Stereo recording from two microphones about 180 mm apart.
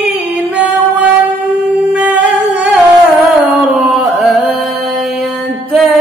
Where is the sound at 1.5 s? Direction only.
5° right (ahead or behind).